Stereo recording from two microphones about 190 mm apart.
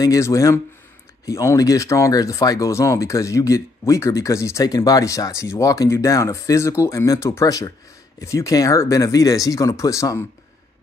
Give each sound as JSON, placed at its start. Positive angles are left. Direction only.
{"t": 0.0, "sound": "speech", "side_deg": 15}